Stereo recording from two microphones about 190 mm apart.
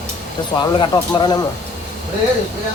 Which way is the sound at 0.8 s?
25° left (ahead or behind).